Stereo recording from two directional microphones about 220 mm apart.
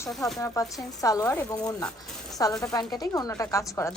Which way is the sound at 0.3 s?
15° left (ahead or behind).